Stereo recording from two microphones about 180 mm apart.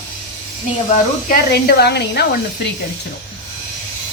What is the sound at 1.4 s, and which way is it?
Speech, 60° left (ahead or behind).